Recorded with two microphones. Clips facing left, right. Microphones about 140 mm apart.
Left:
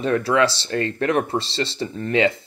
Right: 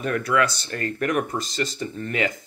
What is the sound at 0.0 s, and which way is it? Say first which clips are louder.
Speech: left 4 dB; 25° left (ahead or behind).